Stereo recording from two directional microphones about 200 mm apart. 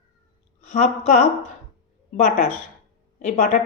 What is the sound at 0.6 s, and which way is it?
A woman's voice, 35° left (ahead or behind).